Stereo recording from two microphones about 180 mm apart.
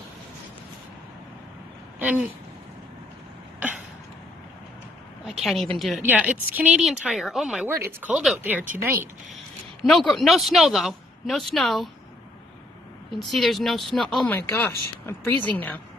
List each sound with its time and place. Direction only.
2.0 s speech: 10° right (ahead or behind)
5.2 s a woman's voice: centre (ahead or behind)
9.8 s a woman's voice: centre (ahead or behind)
13.3 s speech: centre (ahead or behind)